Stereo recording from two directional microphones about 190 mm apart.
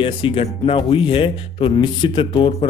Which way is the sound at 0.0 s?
30° left (ahead or behind).